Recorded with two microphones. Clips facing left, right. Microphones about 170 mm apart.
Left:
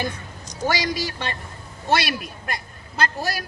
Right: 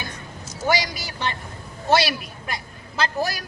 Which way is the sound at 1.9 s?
55° left (ahead or behind).